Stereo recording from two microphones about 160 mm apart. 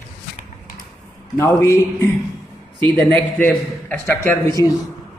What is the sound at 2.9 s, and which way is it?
A man's voice, 5° left (ahead or behind).